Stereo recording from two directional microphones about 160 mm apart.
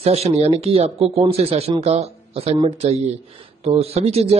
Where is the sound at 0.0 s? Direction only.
40° right (ahead or behind).